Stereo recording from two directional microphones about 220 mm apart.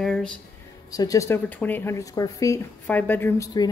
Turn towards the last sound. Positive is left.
turn(degrees=15)  # may be behind; listen again after turning